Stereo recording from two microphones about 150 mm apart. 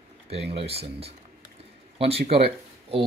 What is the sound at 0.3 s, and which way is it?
Speech, 40° right (ahead or behind).